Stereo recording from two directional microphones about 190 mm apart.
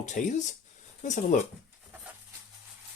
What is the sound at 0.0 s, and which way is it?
Speech, 40° left (ahead or behind).